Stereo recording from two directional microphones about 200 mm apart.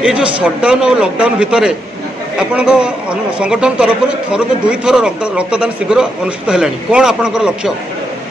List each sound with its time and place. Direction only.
0.0 s a man's voice: 5° right (ahead or behind)